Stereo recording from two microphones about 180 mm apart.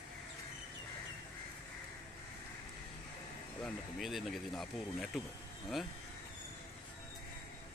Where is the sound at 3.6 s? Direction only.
Centre (ahead or behind).